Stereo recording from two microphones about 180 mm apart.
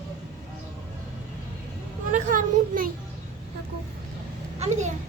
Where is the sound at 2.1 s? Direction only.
50° right (ahead or behind).